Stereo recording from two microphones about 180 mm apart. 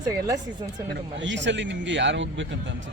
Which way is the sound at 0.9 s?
85° right.